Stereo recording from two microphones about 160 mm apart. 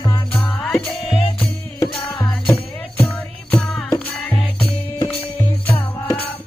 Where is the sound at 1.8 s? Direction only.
10° left (ahead or behind).